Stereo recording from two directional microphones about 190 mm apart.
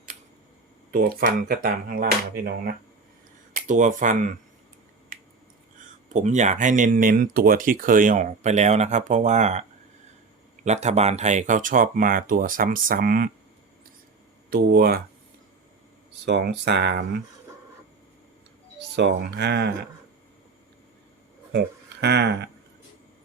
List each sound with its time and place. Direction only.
0.9 s speech: 50° right (ahead or behind)
3.5 s speech: 40° right (ahead or behind)
6.1 s speech: 40° right (ahead or behind)
14.5 s speech: 50° right (ahead or behind)
16.2 s speech: 60° right (ahead or behind)
18.9 s speech: 65° right (ahead or behind)
22.0 s speech: 60° right (ahead or behind)